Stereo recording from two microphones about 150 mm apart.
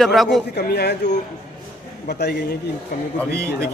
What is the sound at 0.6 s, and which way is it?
Speech, 90° left.